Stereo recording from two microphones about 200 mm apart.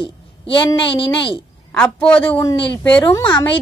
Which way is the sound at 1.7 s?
5° left (ahead or behind).